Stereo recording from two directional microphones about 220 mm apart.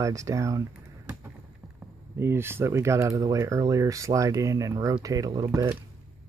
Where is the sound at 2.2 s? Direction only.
10° right (ahead or behind).